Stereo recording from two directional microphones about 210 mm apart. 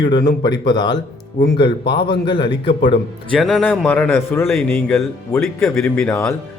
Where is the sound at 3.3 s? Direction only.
5° left (ahead or behind).